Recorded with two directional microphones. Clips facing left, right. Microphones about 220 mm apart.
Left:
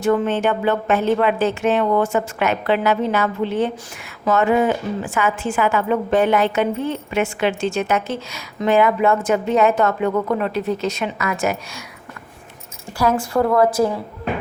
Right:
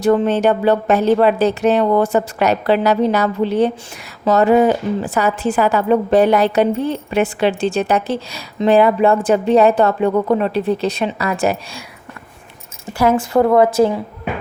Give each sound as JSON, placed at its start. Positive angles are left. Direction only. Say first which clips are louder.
{"t": 0.0, "sound": "a woman's voice", "louder": "right 4 dB", "side_deg": -35}
{"t": 13.3, "sound": "a woman's voice", "louder": "right 4 dB", "side_deg": -25}